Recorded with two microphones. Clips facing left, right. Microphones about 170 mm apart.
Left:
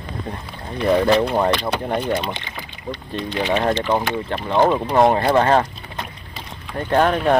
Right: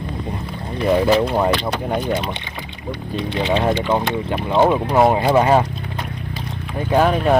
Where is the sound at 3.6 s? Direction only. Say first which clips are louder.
Right 1 dB; 5° right (ahead or behind).